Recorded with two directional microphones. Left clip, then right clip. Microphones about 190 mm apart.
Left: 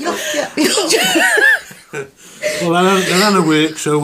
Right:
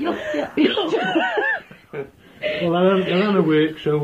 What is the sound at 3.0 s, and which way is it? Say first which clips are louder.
Speech: left 7 dB; 40° left (ahead or behind).